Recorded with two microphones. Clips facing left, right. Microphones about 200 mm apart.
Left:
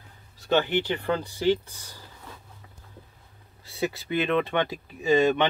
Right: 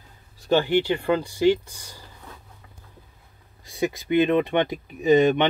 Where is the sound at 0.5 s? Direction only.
10° right (ahead or behind).